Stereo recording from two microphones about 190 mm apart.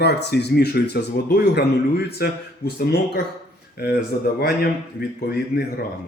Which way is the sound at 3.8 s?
60° left (ahead or behind).